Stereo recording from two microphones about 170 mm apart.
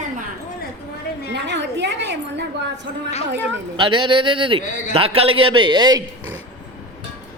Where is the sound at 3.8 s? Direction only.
30° right (ahead or behind).